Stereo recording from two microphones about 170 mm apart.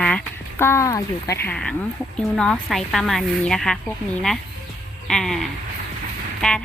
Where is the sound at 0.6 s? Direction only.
15° left (ahead or behind).